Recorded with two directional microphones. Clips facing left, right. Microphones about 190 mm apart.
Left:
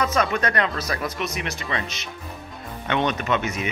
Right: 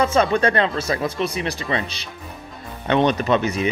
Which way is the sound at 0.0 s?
30° right (ahead or behind).